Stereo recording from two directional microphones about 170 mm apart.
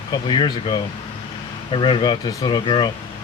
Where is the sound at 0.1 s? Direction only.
25° left (ahead or behind).